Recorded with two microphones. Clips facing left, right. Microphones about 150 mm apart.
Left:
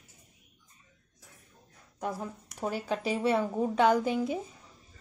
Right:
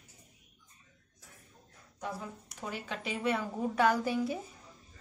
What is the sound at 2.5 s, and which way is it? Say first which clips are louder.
A woman's voice: left 8 dB; 40° left (ahead or behind).